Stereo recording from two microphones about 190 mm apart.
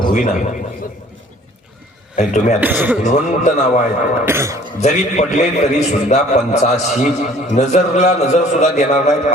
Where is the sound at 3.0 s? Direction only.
40° left (ahead or behind).